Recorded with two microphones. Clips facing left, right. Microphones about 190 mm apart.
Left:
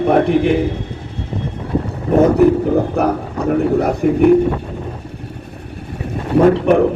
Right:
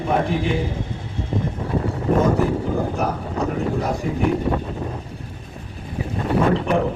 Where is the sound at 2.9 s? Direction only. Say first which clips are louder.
Left 6 dB; 60° left (ahead or behind).